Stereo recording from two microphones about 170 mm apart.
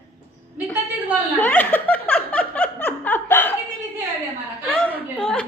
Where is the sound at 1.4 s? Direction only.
10° left (ahead or behind).